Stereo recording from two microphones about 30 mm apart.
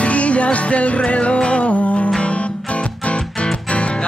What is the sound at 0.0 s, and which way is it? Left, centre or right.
Music, left.